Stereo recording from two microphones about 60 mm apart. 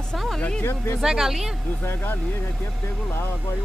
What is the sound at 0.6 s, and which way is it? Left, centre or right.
Speech, left.